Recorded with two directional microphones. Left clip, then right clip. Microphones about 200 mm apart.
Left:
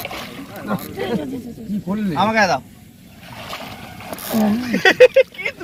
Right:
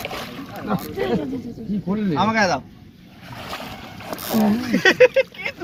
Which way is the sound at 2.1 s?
55° left (ahead or behind).